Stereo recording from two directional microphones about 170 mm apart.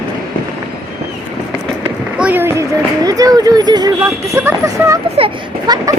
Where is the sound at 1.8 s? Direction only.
10° right (ahead or behind).